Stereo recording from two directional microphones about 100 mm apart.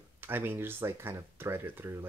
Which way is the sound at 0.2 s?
20° right (ahead or behind).